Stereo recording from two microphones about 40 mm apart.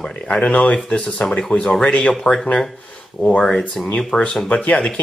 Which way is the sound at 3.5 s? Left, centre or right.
Centre.